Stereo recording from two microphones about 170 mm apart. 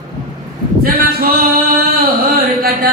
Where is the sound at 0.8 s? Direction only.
60° right (ahead or behind).